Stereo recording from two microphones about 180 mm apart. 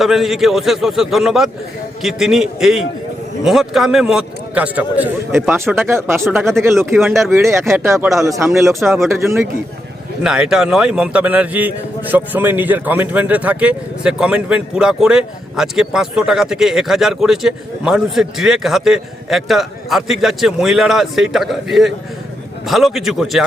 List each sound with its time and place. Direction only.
0.0 s a man's voice: centre (ahead or behind)
7.1 s a man's voice: centre (ahead or behind)
7.3 s speech: 15° right (ahead or behind)
10.2 s a man's voice: 5° right (ahead or behind)